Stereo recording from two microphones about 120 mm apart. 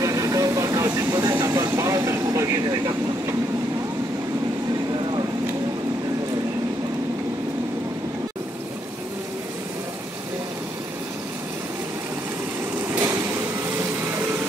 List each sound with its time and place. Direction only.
0.0 s vehicle: 30° right (ahead or behind)
13.7 s vehicle: 20° right (ahead or behind)